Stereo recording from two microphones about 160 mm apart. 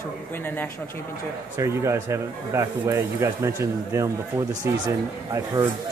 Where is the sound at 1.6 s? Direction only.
20° right (ahead or behind).